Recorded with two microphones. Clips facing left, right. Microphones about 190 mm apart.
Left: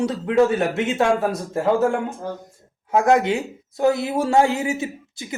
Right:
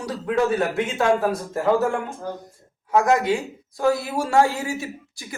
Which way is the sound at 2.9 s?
25° left (ahead or behind).